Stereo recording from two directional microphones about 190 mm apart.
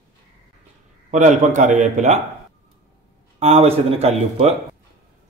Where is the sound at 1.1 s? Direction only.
40° right (ahead or behind).